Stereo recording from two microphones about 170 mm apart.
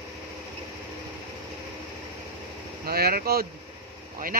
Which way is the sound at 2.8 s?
65° right (ahead or behind).